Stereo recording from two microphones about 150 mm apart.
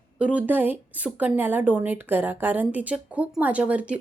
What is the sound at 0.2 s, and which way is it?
Speech, 10° right (ahead or behind).